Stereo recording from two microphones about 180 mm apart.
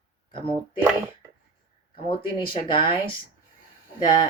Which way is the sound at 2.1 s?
25° left (ahead or behind).